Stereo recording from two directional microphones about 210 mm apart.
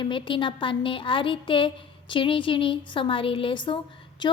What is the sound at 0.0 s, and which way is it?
A woman's voice, 25° left (ahead or behind).